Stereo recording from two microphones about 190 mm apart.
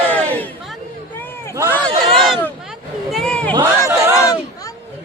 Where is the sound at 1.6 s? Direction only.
5° left (ahead or behind).